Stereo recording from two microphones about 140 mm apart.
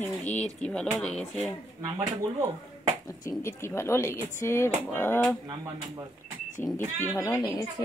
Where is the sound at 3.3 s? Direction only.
20° left (ahead or behind).